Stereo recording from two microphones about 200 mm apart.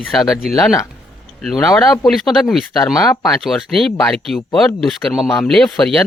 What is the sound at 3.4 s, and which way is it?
Speech, centre (ahead or behind).